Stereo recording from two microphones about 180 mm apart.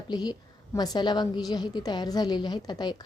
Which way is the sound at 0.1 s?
25° left (ahead or behind).